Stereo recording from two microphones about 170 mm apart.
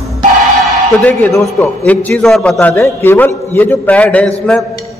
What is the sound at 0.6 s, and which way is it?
A man's voice, 5° left (ahead or behind).